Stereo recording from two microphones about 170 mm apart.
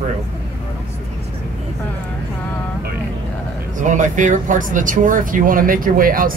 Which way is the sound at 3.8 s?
50° right (ahead or behind).